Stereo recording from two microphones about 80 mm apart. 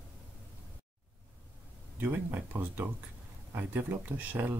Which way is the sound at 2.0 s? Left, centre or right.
Right.